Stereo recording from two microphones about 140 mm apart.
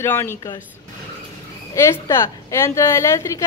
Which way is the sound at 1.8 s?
20° left (ahead or behind).